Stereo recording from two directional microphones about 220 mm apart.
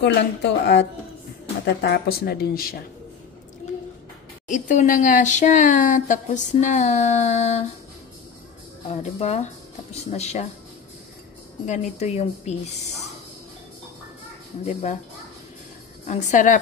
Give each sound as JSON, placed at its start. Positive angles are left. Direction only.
{"t": 0.0, "sound": "speech", "side_deg": 50}
{"t": 4.5, "sound": "speech", "side_deg": 35}
{"t": 8.8, "sound": "speech", "side_deg": 30}
{"t": 11.6, "sound": "speech", "side_deg": 30}
{"t": 14.6, "sound": "speech", "side_deg": 30}
{"t": 16.1, "sound": "speech", "side_deg": 30}